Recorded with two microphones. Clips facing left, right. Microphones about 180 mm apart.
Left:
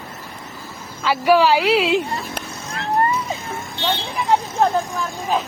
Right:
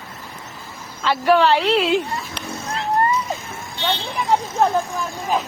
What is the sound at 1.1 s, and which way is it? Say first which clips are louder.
Speech: left 1 dB; 5° left (ahead or behind).